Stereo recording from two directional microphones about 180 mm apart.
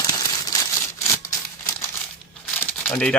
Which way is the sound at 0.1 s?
20° left (ahead or behind).